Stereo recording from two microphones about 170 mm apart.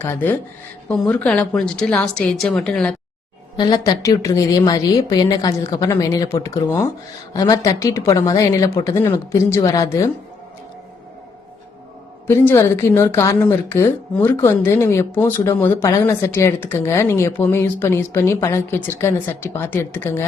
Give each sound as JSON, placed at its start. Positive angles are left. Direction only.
{"t": 0.0, "sound": "a woman's voice", "side_deg": 10}
{"t": 3.6, "sound": "a woman's voice", "side_deg": 20}
{"t": 12.3, "sound": "speech", "side_deg": 15}